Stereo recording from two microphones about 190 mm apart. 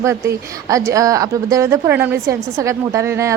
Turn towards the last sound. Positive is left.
turn(degrees=-15)  # may be behind; listen again after turning